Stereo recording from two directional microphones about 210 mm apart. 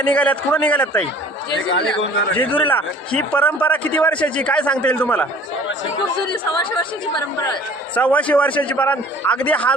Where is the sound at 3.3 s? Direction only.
5° left (ahead or behind).